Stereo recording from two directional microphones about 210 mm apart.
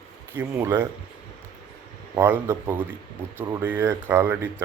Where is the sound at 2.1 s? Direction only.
10° right (ahead or behind).